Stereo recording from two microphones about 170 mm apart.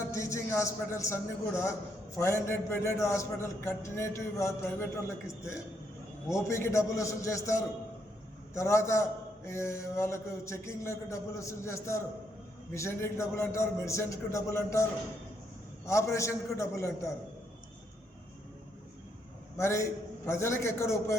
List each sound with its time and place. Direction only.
0.1 s a man's voice: 20° left (ahead or behind)
15.9 s a man's voice: 15° left (ahead or behind)
19.5 s a man's voice: 15° left (ahead or behind)